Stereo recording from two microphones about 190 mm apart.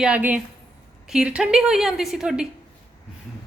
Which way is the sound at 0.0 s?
5° right (ahead or behind).